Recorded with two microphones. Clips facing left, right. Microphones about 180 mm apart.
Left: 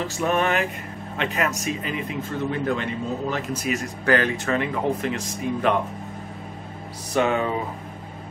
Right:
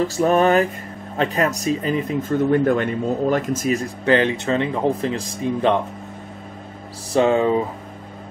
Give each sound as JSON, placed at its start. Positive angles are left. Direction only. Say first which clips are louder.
{"t": 0.1, "sound": "speech", "louder": "right 6 dB", "side_deg": -35}
{"t": 4.0, "sound": "speech", "louder": "right 3 dB", "side_deg": -25}
{"t": 7.1, "sound": "speech", "louder": "right 5 dB", "side_deg": -30}